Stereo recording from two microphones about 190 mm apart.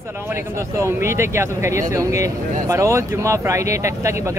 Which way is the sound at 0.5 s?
15° right (ahead or behind).